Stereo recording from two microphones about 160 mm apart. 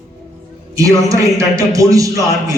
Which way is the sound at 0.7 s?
20° right (ahead or behind).